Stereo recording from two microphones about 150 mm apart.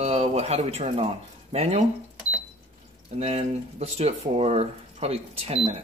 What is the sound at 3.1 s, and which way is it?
Speech, 45° right (ahead or behind).